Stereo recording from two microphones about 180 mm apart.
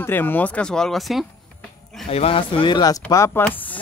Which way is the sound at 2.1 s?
30° left (ahead or behind).